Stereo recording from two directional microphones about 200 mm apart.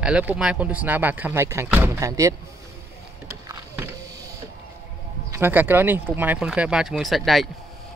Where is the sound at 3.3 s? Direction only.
15° right (ahead or behind).